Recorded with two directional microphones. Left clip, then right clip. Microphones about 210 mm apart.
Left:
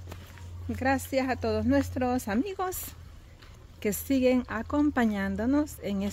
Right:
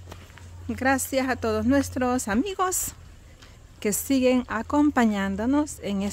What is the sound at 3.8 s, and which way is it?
Speech, 15° right (ahead or behind).